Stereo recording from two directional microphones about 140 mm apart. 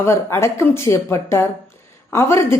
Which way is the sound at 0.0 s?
20° left (ahead or behind).